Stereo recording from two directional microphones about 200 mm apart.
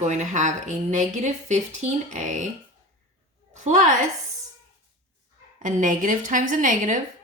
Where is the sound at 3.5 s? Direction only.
35° right (ahead or behind).